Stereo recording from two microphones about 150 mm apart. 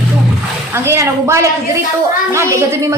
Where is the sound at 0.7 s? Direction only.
15° right (ahead or behind).